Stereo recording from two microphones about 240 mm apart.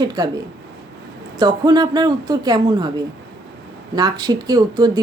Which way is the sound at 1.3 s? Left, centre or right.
Centre.